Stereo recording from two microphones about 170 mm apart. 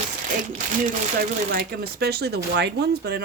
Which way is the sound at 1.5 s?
65° right (ahead or behind).